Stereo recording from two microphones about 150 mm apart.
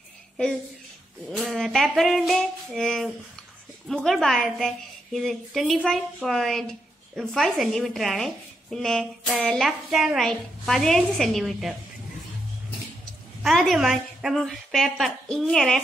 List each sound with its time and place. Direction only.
1.3 s a woman's voice: centre (ahead or behind)
13.4 s a woman's voice: centre (ahead or behind)